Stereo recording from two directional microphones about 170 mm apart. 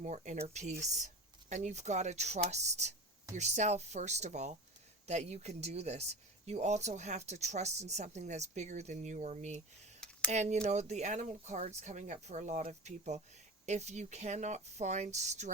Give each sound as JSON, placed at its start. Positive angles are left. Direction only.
{"t": 0.0, "sound": "speech", "side_deg": -45}